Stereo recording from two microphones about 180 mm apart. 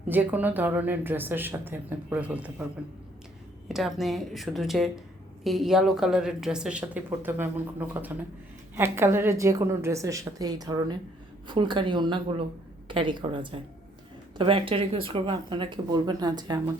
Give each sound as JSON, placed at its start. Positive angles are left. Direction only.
{"t": 0.1, "sound": "speech", "side_deg": -10}
{"t": 3.7, "sound": "a woman's voice", "side_deg": 0}